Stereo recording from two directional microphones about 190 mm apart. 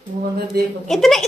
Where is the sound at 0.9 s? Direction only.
Centre (ahead or behind).